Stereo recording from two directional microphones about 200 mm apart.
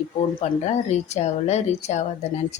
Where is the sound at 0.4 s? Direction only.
35° left (ahead or behind).